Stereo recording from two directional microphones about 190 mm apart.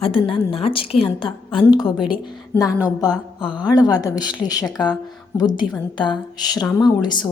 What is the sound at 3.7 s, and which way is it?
A woman's voice, 20° left (ahead or behind).